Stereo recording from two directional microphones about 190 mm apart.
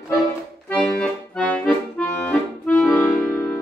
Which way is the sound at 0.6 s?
5° left (ahead or behind).